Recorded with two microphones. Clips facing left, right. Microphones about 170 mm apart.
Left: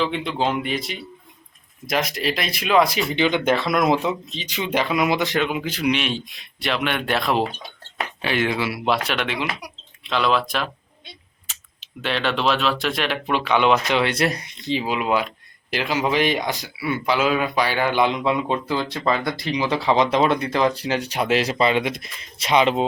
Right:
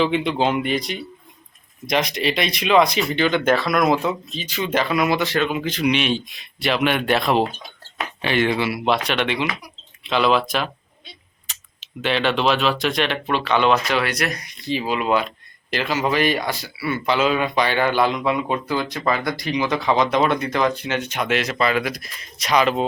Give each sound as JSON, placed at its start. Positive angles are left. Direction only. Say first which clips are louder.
{"t": 0.0, "sound": "speech", "louder": "right 3 dB", "side_deg": 0}